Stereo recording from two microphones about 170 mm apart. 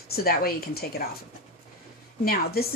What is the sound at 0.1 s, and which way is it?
Speech, 65° left (ahead or behind).